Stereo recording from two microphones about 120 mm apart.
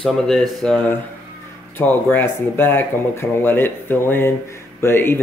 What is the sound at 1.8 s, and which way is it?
Speech, 15° left (ahead or behind).